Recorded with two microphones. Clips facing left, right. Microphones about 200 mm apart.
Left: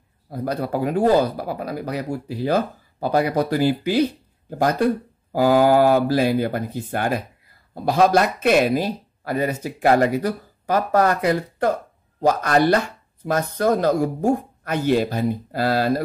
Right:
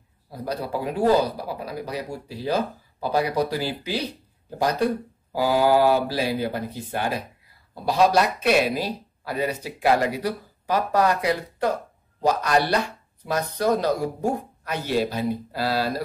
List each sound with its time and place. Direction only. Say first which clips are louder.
0.3 s speech: left 4 dB; 50° left (ahead or behind)
5.3 s speech: left 4 dB; 50° left (ahead or behind)